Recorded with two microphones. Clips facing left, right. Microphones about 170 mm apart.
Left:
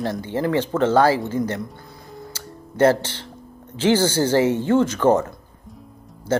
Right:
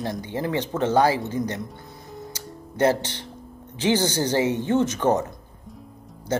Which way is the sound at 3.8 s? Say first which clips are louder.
Left 4 dB; 20° right (ahead or behind).